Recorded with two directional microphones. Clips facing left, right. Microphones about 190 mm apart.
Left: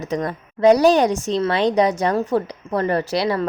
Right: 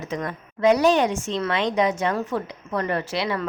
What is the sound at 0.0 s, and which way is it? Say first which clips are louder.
Speech: left 5 dB; 35° left (ahead or behind).